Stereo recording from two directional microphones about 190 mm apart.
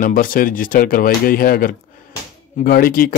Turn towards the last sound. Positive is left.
turn(degrees=50)  # may be behind; listen again after turning